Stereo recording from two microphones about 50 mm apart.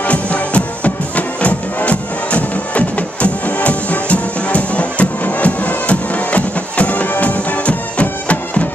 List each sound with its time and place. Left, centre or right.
0.0 s music: left